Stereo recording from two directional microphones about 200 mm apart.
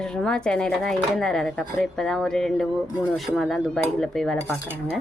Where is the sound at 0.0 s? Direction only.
5° left (ahead or behind).